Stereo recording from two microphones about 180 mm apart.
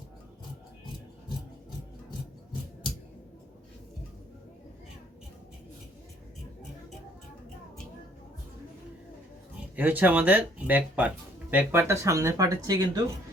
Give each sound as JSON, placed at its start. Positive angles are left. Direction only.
{"t": 9.7, "sound": "speech", "side_deg": -10}